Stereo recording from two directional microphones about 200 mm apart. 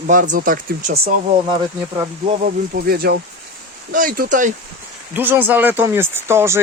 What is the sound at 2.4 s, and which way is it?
Speech, 50° right (ahead or behind).